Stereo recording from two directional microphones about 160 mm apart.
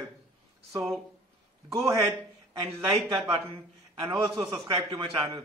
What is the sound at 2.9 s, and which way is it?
A man's voice, 35° right (ahead or behind).